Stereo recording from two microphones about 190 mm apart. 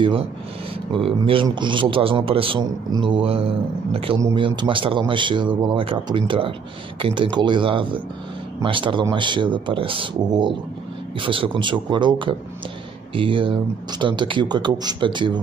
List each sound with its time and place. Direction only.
0.9 s a man's voice: 30° right (ahead or behind)
4.2 s speech: 15° right (ahead or behind)
4.5 s a man's voice: 25° right (ahead or behind)